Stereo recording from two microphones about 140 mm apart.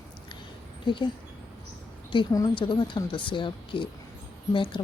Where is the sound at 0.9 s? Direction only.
35° left (ahead or behind).